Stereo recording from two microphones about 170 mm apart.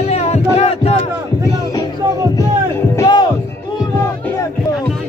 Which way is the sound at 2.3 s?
20° left (ahead or behind).